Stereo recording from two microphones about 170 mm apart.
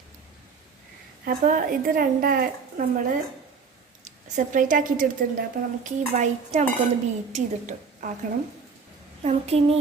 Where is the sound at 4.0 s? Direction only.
50° right (ahead or behind).